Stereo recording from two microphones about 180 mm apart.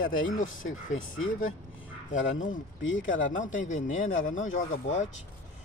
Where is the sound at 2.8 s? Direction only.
90° left.